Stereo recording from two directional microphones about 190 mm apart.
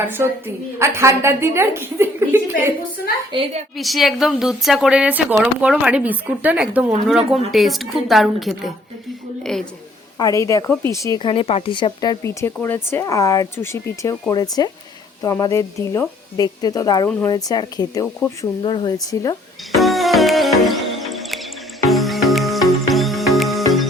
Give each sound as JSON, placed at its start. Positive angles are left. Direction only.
{"t": 0.0, "sound": "a woman's voice", "side_deg": -10}
{"t": 3.3, "sound": "a woman's voice", "side_deg": -25}
{"t": 3.8, "sound": "a woman's voice", "side_deg": 0}
{"t": 10.2, "sound": "a woman's voice", "side_deg": 20}
{"t": 19.7, "sound": "music", "side_deg": 0}